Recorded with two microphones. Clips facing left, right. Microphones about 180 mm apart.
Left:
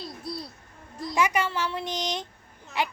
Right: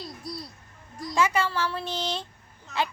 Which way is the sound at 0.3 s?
25° left (ahead or behind).